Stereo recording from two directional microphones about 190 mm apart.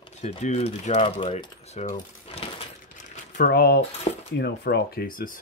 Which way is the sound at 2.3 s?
30° left (ahead or behind).